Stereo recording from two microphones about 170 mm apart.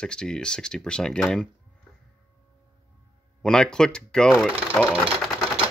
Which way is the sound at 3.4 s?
5° left (ahead or behind).